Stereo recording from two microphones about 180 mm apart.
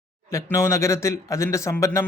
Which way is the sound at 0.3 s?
15° left (ahead or behind).